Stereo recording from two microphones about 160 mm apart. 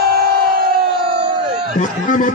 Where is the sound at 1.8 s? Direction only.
50° left (ahead or behind).